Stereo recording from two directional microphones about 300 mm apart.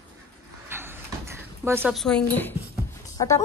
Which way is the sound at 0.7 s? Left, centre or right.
Centre.